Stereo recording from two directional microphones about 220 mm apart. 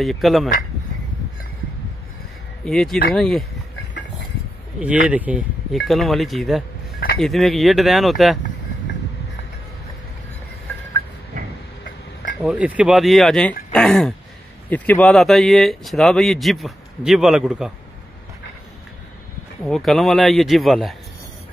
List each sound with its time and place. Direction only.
0.0 s speech: centre (ahead or behind)
2.6 s speech: centre (ahead or behind)
4.7 s speech: 5° right (ahead or behind)
11.3 s tick-tock: 40° right (ahead or behind)
12.4 s speech: 5° right (ahead or behind)
19.6 s speech: centre (ahead or behind)